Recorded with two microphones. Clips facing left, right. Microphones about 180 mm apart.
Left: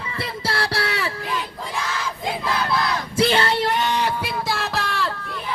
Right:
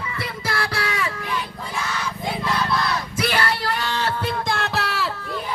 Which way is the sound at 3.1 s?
25° left (ahead or behind).